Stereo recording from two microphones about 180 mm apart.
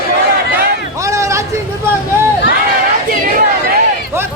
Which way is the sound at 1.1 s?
15° right (ahead or behind).